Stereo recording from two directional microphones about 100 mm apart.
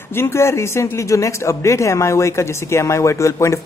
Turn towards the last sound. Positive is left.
turn(degrees=30)  # may be behind; listen again after turning